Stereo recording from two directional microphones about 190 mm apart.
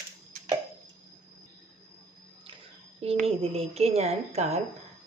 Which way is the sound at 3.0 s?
35° right (ahead or behind).